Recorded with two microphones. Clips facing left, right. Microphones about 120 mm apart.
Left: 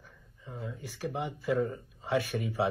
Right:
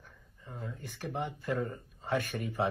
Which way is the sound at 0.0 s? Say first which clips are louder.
Left 2 dB; 10° left (ahead or behind).